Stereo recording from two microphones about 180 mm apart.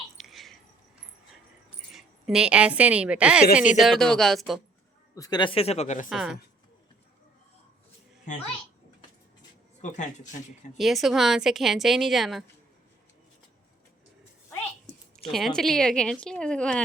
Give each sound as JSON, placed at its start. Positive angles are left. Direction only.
{"t": 0.2, "sound": "squish", "side_deg": 0}
{"t": 1.9, "sound": "a woman's voice", "side_deg": 0}
{"t": 5.1, "sound": "speech", "side_deg": 20}
{"t": 6.1, "sound": "a woman's voice", "side_deg": -5}
{"t": 9.9, "sound": "speech", "side_deg": 40}
{"t": 10.8, "sound": "a woman's voice", "side_deg": 0}
{"t": 15.2, "sound": "a woman's voice", "side_deg": 0}